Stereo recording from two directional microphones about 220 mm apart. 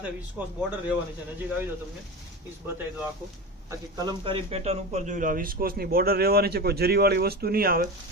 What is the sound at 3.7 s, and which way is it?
Speech, 20° right (ahead or behind).